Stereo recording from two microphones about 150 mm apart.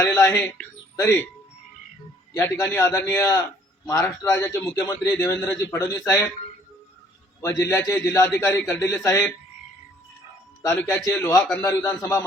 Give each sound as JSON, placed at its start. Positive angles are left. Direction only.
{"t": 0.0, "sound": "speech", "side_deg": 20}
{"t": 2.3, "sound": "a man's voice", "side_deg": 20}
{"t": 7.4, "sound": "a man's voice", "side_deg": 20}
{"t": 10.8, "sound": "a man's voice", "side_deg": 20}